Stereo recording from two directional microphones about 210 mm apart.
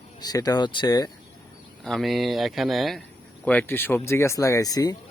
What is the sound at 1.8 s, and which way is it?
Speech, centre (ahead or behind).